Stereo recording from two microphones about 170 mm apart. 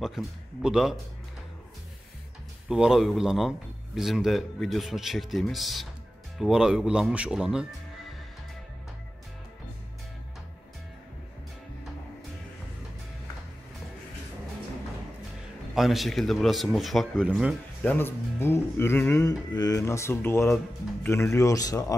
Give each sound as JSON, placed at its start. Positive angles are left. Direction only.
{"t": 0.0, "sound": "a man's voice", "side_deg": 0}
{"t": 2.7, "sound": "a man's voice", "side_deg": -5}
{"t": 15.7, "sound": "a man's voice", "side_deg": 0}
{"t": 17.8, "sound": "speech", "side_deg": 10}